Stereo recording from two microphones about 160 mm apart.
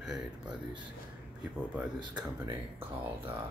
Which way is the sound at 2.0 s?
25° right (ahead or behind).